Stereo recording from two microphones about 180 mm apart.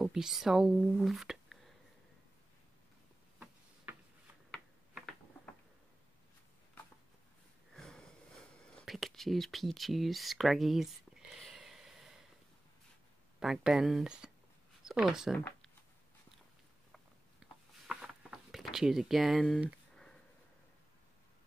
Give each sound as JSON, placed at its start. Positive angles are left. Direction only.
{"t": 0.0, "sound": "speech", "side_deg": 0}
{"t": 4.5, "sound": "tick-tock", "side_deg": 0}
{"t": 7.7, "sound": "a sound", "side_deg": 5}
{"t": 8.8, "sound": "whispering", "side_deg": 0}
{"t": 13.4, "sound": "speech", "side_deg": 0}
{"t": 15.3, "sound": "speech", "side_deg": 10}
{"t": 16.9, "sound": "a sound", "side_deg": -5}